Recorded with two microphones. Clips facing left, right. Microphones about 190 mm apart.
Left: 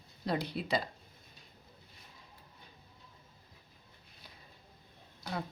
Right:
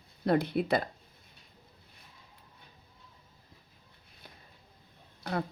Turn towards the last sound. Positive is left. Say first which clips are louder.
# right 6 dB
turn(degrees=-55)  # may be behind; listen again after turning